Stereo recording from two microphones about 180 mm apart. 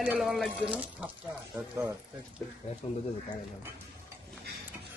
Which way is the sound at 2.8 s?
30° left (ahead or behind).